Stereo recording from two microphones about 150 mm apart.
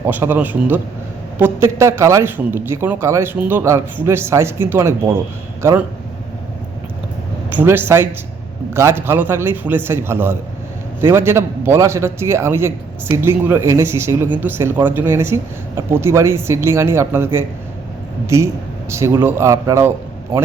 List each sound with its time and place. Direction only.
0.0 s a man's voice: 15° right (ahead or behind)
7.5 s a man's voice: 15° right (ahead or behind)
18.9 s a man's voice: 20° right (ahead or behind)